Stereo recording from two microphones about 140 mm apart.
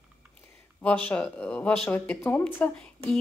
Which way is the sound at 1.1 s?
10° left (ahead or behind).